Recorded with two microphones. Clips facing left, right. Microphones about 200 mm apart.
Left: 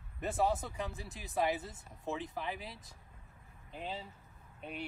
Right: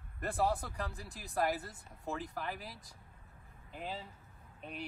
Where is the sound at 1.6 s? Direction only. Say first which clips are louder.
Left 1 dB; 25° left (ahead or behind).